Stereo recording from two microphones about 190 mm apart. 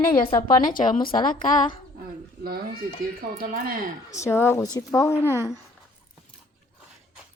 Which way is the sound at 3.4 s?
50° right (ahead or behind).